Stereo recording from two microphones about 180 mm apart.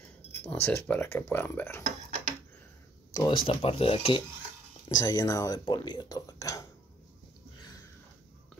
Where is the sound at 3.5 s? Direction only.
35° left (ahead or behind).